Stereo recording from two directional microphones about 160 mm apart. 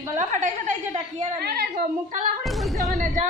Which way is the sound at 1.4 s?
70° right (ahead or behind).